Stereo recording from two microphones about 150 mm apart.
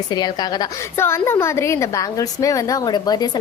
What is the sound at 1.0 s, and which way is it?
A woman's voice, 15° left (ahead or behind).